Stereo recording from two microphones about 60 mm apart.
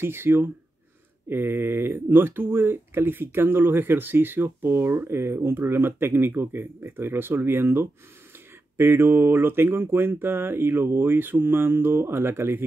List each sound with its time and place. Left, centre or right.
0.0 s speech: right